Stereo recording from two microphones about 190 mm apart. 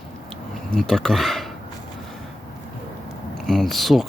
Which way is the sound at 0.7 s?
Centre (ahead or behind).